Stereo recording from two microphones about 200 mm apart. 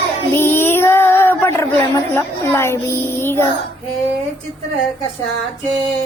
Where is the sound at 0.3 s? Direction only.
10° left (ahead or behind).